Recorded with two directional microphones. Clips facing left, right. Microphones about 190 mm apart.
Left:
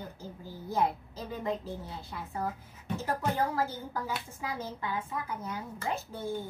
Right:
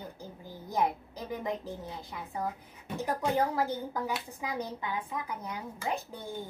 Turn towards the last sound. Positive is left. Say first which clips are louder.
# even
turn(degrees=-15)  # may be behind; listen again after turning